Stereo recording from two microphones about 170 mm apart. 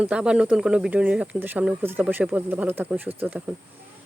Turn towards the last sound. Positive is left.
turn(degrees=-10)  # may be behind; listen again after turning